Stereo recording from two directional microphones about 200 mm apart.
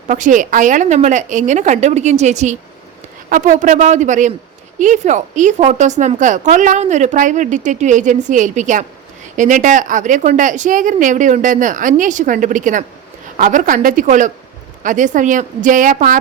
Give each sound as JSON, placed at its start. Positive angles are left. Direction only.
{"t": 0.1, "sound": "a woman's voice", "side_deg": -40}